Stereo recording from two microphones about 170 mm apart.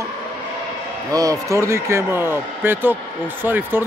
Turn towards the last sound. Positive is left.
turn(degrees=-10)  # may be behind; listen again after turning